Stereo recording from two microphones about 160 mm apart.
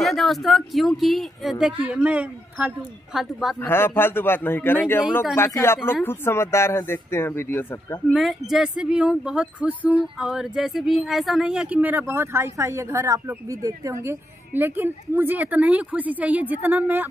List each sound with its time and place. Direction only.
0.0 s speech: centre (ahead or behind)
3.6 s speech: 15° left (ahead or behind)
8.1 s speech: centre (ahead or behind)